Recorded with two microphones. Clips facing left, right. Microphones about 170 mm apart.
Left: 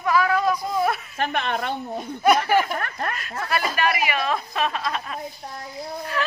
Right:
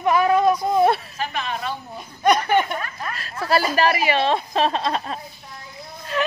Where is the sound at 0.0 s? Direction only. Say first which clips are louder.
Right 4 dB; 25° right (ahead or behind).